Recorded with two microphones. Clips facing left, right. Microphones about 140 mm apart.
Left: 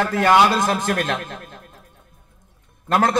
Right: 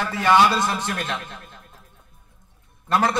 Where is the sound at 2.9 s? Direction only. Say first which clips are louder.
Left 3 dB; 50° left (ahead or behind).